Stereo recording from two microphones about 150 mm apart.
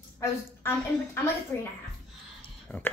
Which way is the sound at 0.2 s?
15° left (ahead or behind).